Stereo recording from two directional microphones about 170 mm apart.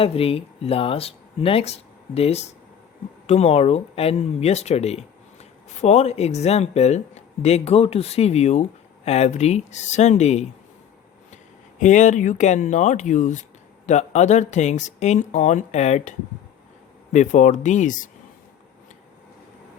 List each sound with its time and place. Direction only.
0.0 s speech: 35° left (ahead or behind)
11.8 s speech: 45° left (ahead or behind)